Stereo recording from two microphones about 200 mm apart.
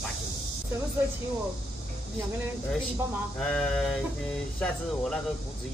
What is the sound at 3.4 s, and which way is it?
Speech, 5° left (ahead or behind).